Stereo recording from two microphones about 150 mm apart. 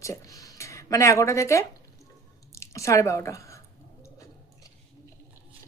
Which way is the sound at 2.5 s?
20° left (ahead or behind).